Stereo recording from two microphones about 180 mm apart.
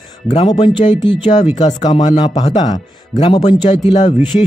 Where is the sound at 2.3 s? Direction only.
40° left (ahead or behind).